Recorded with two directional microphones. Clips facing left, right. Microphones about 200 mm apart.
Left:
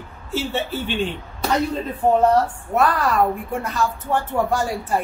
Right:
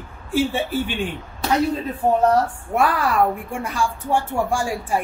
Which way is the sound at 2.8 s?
10° right (ahead or behind).